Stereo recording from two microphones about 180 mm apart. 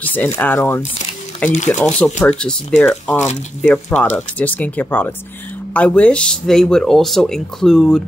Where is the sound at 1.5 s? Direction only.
40° left (ahead or behind).